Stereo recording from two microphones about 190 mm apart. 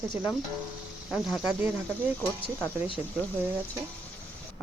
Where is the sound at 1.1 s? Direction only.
Centre (ahead or behind).